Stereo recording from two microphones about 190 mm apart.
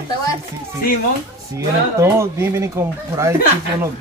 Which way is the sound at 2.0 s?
15° right (ahead or behind).